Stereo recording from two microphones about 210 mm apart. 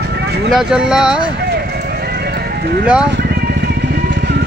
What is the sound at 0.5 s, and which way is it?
Speech, 5° right (ahead or behind).